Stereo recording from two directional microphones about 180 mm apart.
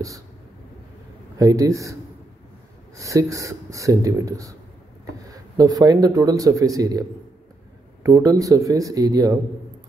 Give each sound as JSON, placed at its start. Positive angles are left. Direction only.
{"t": 1.4, "sound": "speech", "side_deg": -20}
{"t": 3.0, "sound": "speech", "side_deg": -20}